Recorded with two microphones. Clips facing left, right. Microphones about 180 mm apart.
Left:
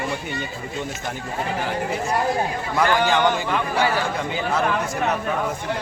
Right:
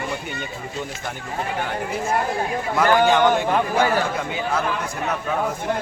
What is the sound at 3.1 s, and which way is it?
Speech, centre (ahead or behind).